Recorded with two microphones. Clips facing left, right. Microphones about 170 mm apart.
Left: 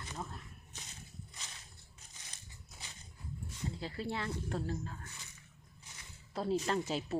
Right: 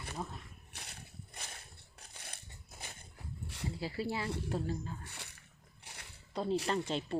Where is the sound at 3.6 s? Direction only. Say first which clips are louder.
Right 2 dB; 5° right (ahead or behind).